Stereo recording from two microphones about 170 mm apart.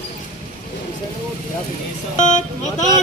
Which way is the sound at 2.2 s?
45° left (ahead or behind).